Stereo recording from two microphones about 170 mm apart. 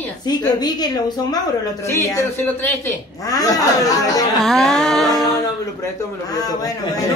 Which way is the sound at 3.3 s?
20° left (ahead or behind).